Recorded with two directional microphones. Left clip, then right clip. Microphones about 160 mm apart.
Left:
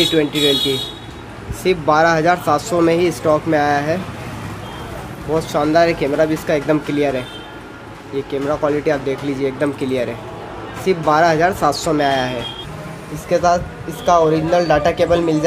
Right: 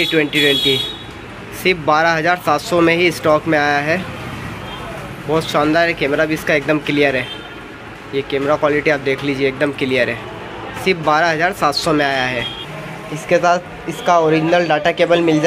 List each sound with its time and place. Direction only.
0.0 s a man's voice: 5° left (ahead or behind)
5.3 s a man's voice: 10° left (ahead or behind)